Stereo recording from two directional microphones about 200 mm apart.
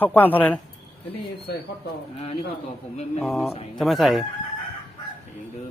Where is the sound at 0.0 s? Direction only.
10° left (ahead or behind).